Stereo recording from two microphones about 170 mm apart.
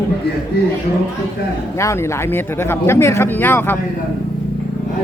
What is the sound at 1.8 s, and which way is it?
Speech, 15° left (ahead or behind).